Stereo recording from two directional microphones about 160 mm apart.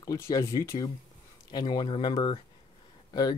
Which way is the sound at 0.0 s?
20° left (ahead or behind).